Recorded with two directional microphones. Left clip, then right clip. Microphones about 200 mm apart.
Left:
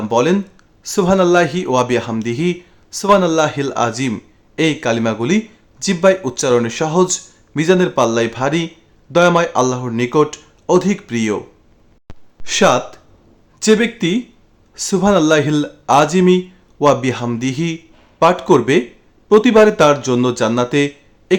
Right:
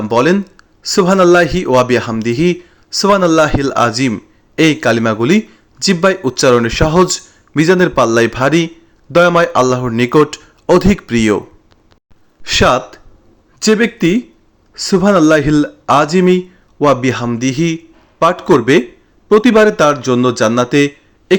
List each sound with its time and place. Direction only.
0.1 s speech: 10° right (ahead or behind)
12.5 s speech: 15° right (ahead or behind)